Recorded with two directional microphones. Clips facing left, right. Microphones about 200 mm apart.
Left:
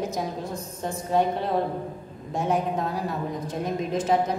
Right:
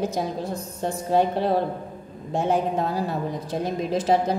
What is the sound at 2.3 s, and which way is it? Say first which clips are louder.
A woman's voice: right 3 dB; 30° right (ahead or behind).